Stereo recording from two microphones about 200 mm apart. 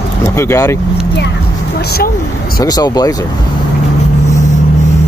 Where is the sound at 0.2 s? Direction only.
15° left (ahead or behind).